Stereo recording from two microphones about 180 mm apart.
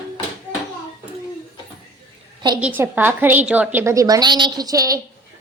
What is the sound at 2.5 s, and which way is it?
A woman's voice, 10° right (ahead or behind).